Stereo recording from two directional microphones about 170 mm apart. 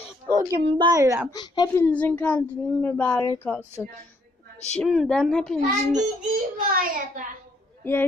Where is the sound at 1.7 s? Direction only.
10° left (ahead or behind).